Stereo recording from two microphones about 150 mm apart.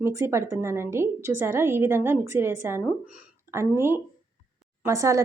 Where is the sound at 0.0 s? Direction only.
20° right (ahead or behind).